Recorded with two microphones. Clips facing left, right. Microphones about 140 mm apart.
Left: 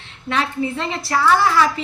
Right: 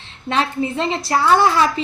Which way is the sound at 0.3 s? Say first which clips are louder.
Right 1 dB; 25° right (ahead or behind).